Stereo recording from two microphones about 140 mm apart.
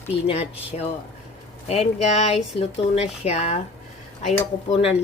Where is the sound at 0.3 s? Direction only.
45° left (ahead or behind).